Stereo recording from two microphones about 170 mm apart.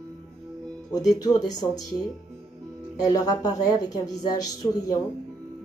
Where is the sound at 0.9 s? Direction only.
20° left (ahead or behind).